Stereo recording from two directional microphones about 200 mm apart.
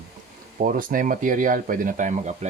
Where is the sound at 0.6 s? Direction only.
45° right (ahead or behind).